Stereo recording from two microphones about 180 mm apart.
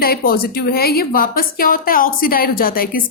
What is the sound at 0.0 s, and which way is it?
A woman's voice, 55° left (ahead or behind).